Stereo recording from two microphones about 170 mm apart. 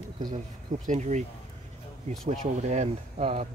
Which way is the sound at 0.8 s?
45° right (ahead or behind).